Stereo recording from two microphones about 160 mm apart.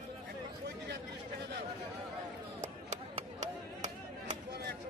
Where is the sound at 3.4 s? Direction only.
45° right (ahead or behind).